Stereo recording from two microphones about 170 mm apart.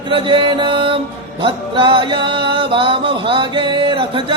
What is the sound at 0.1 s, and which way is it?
Music, 30° right (ahead or behind).